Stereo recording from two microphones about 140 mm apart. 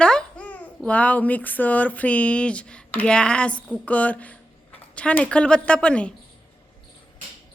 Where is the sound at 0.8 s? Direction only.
10° left (ahead or behind).